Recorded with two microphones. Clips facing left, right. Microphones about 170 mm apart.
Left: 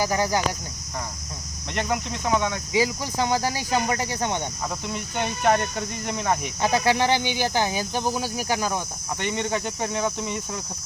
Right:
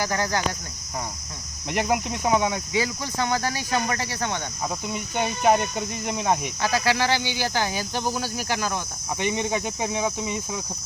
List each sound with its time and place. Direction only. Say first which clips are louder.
0.0 s speech: left 2 dB; 15° left (ahead or behind)
1.7 s speech: right 3 dB; 10° right (ahead or behind)
2.7 s speech: left 2 dB; 15° left (ahead or behind)
4.9 s speech: right 2 dB; 10° right (ahead or behind)
6.6 s cricket: left 2 dB; 20° left (ahead or behind)
7.3 s speech: left 2 dB; 20° left (ahead or behind)
9.1 s speech: right 1 dB; 10° right (ahead or behind)